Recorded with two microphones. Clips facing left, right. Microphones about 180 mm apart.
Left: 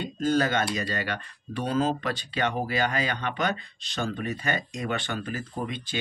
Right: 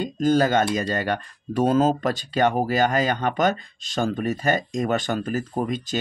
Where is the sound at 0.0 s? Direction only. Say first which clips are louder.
Right 5 dB; 40° right (ahead or behind).